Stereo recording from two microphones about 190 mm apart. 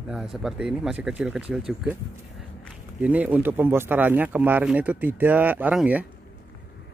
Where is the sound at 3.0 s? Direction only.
10° right (ahead or behind).